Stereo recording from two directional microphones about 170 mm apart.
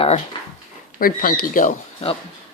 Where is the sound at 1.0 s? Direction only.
55° left (ahead or behind).